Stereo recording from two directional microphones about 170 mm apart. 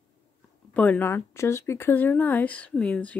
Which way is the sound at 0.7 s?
10° left (ahead or behind).